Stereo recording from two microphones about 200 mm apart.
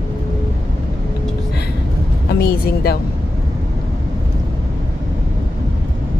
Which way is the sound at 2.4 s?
50° left (ahead or behind).